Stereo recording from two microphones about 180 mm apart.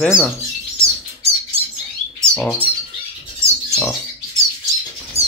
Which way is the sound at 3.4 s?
15° right (ahead or behind).